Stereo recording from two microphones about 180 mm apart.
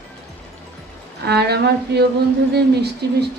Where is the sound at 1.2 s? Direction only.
65° right (ahead or behind).